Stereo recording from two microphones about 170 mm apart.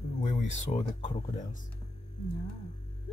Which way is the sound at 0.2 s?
40° left (ahead or behind).